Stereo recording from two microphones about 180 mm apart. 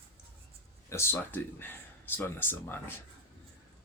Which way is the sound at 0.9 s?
15° left (ahead or behind).